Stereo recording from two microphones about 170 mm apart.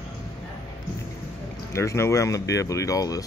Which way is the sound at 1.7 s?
15° left (ahead or behind).